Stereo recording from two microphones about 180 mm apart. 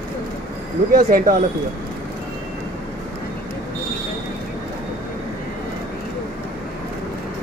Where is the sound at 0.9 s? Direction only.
50° right (ahead or behind).